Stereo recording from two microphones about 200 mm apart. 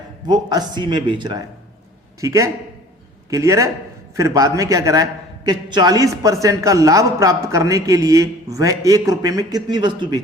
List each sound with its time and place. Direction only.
0.3 s a man's voice: 20° right (ahead or behind)